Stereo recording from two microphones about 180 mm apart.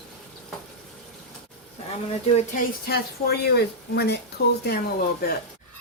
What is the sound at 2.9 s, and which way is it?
A woman's voice, 65° left (ahead or behind).